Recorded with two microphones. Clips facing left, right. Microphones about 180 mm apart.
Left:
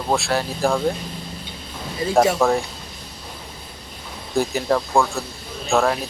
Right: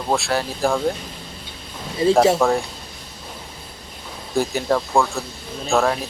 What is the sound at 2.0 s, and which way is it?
Speech, 25° right (ahead or behind).